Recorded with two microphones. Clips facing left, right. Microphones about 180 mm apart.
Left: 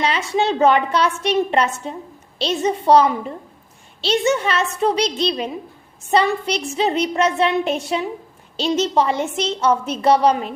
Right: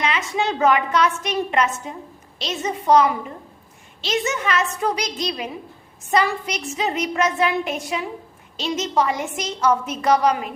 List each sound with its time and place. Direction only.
0.0 s a woman's voice: 30° left (ahead or behind)